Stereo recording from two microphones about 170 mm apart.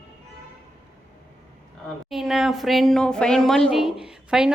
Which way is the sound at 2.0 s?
Centre (ahead or behind).